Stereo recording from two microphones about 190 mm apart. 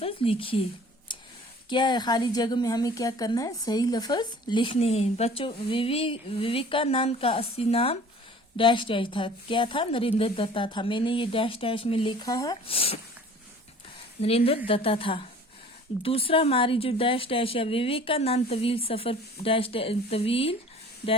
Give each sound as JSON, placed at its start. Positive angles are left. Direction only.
{"t": 0.0, "sound": "a woman's voice", "side_deg": 30}
{"t": 1.1, "sound": "a sound", "side_deg": 25}
{"t": 1.7, "sound": "a woman's voice", "side_deg": 20}
{"t": 14.2, "sound": "a woman's voice", "side_deg": 30}